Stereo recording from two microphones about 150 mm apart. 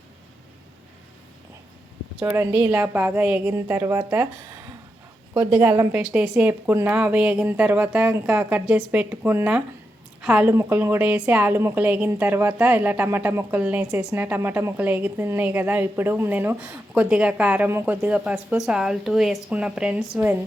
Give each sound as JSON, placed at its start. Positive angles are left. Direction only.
{"t": 2.2, "sound": "a woman's voice", "side_deg": -15}
{"t": 5.3, "sound": "a woman's voice", "side_deg": -15}
{"t": 6.0, "sound": "a woman's voice", "side_deg": -5}